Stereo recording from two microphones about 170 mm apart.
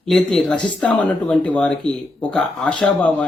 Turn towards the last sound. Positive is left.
turn(degrees=5)  # may be behind; listen again after turning